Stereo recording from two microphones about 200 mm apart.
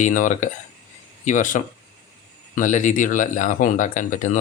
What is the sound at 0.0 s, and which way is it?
Speech, 40° left (ahead or behind).